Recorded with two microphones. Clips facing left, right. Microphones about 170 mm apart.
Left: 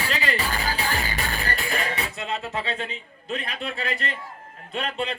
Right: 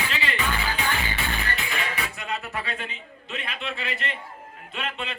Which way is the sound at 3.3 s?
40° left (ahead or behind).